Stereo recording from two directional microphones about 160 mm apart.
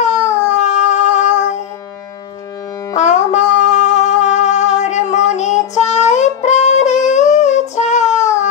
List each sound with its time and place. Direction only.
0.0 s music: 45° left (ahead or behind)
3.0 s music: 45° left (ahead or behind)